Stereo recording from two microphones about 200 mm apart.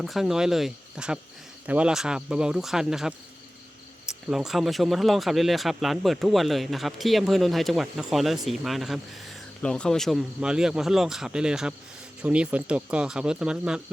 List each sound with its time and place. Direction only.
0.0 s speech: centre (ahead or behind)